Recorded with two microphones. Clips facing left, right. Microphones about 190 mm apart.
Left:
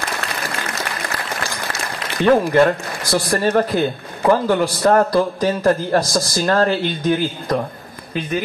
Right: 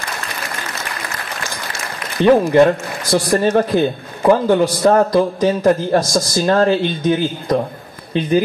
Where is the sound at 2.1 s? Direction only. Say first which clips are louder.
Right 3 dB; 15° right (ahead or behind).